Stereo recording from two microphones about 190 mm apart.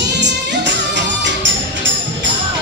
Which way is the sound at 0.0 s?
65° right (ahead or behind).